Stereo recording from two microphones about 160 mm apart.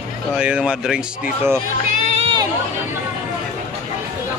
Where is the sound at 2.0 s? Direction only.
40° right (ahead or behind).